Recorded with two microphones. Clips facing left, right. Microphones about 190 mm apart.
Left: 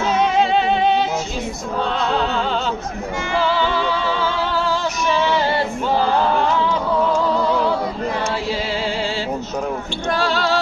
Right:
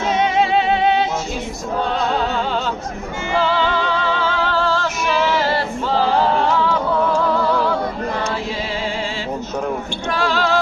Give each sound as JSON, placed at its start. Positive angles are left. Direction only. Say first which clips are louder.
{"t": 0.2, "sound": "music", "louder": "even", "side_deg": 0}
{"t": 4.5, "sound": "music", "louder": "right 1 dB", "side_deg": 10}
{"t": 10.1, "sound": "music", "louder": "right 1 dB", "side_deg": 40}